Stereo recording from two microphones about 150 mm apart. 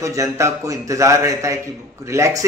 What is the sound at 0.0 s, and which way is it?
Speech, 20° right (ahead or behind).